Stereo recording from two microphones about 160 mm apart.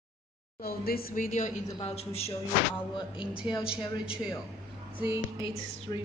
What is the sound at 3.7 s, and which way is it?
Speech, 5° right (ahead or behind).